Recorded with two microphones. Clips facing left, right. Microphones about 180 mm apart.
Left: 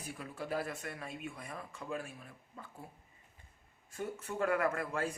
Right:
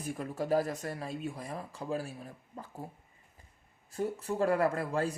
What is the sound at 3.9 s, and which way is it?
Speech, 35° right (ahead or behind).